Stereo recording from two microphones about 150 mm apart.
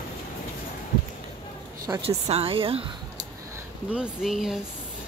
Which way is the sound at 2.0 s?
40° right (ahead or behind).